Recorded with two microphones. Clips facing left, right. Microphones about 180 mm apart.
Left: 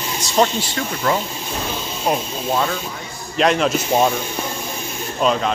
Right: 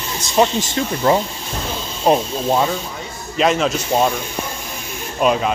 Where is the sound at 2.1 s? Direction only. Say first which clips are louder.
Right 6 dB; 30° right (ahead or behind).